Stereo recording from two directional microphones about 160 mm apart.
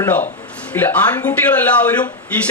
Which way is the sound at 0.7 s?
10° left (ahead or behind).